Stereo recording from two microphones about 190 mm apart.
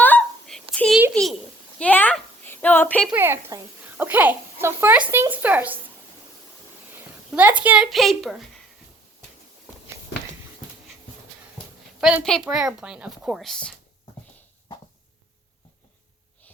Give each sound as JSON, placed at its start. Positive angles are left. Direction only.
{"t": 0.0, "sound": "a sound", "side_deg": 5}
{"t": 3.1, "sound": "a child's voice", "side_deg": -10}
{"t": 7.3, "sound": "a woman's voice", "side_deg": -10}
{"t": 11.9, "sound": "a woman's voice", "side_deg": -5}